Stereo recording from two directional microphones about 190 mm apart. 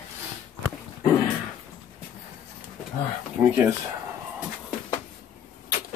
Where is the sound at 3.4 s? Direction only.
10° right (ahead or behind).